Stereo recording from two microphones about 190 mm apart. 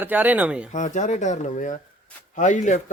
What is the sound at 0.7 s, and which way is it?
A man's voice, 40° left (ahead or behind).